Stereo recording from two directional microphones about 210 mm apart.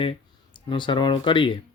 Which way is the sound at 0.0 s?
25° left (ahead or behind).